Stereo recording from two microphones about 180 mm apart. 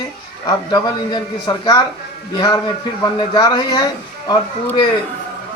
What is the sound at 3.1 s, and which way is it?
Speech, 25° left (ahead or behind).